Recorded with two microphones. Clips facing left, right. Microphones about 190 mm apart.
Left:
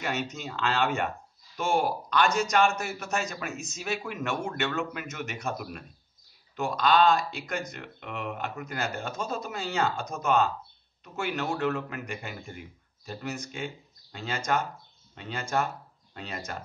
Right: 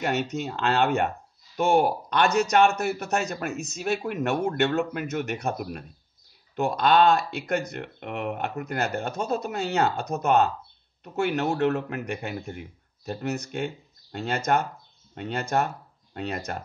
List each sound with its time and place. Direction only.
0.0 s speech: 55° right (ahead or behind)
12.1 s speech: 55° right (ahead or behind)